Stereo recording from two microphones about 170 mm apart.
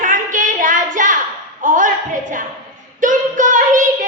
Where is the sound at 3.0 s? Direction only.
50° right (ahead or behind).